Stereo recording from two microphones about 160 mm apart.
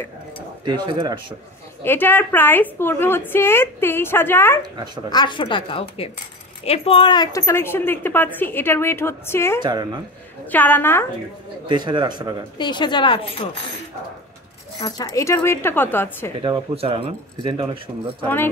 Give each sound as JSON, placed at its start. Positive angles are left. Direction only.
{"t": 0.7, "sound": "a man's voice", "side_deg": -30}
{"t": 1.8, "sound": "a woman's voice", "side_deg": 15}
{"t": 4.7, "sound": "a man's voice", "side_deg": -25}
{"t": 5.1, "sound": "a woman's voice", "side_deg": 30}
{"t": 9.6, "sound": "a man's voice", "side_deg": -25}
{"t": 10.4, "sound": "a woman's voice", "side_deg": 10}
{"t": 11.6, "sound": "a man's voice", "side_deg": -30}
{"t": 12.5, "sound": "a woman's voice", "side_deg": 30}
{"t": 14.8, "sound": "a woman's voice", "side_deg": 25}
{"t": 16.3, "sound": "speech", "side_deg": -30}
{"t": 18.2, "sound": "a woman's voice", "side_deg": 15}